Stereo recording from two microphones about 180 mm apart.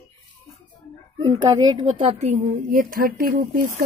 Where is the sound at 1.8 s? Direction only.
40° right (ahead or behind).